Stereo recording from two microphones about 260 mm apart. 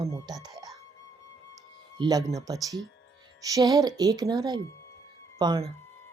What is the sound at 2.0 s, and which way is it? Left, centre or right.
Speech, centre.